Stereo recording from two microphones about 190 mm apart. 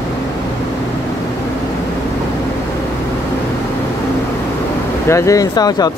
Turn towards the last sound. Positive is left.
turn(degrees=20)  # may be behind; listen again after turning